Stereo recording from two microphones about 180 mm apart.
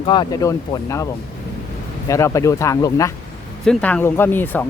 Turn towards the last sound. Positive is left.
turn(degrees=10)  # may be behind; listen again after turning